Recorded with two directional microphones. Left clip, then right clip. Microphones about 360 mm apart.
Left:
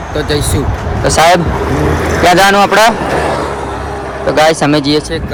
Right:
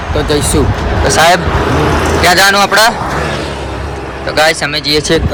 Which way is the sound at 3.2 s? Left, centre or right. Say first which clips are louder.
Left 3 dB; centre.